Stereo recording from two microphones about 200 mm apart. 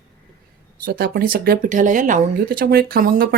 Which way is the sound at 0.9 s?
45° right (ahead or behind).